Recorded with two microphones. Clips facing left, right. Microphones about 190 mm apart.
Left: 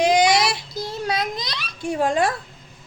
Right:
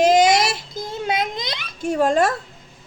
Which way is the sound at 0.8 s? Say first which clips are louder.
Right 2 dB; 25° right (ahead or behind).